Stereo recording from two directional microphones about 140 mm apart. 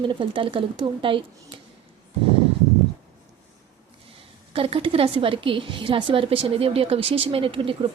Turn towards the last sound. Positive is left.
turn(degrees=-40)  # may be behind; listen again after turning